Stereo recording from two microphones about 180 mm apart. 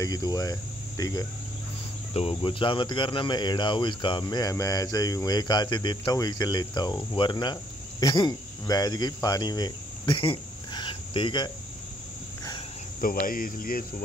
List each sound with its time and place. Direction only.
0.0 s cricket: 20° left (ahead or behind)
2.1 s speech: 30° left (ahead or behind)
13.0 s speech: 50° left (ahead or behind)